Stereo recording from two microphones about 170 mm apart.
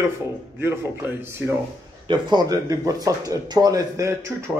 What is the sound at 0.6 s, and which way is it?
Speech, 15° right (ahead or behind).